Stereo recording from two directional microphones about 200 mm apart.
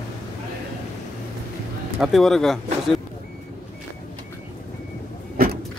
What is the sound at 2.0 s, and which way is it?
Speech, centre (ahead or behind).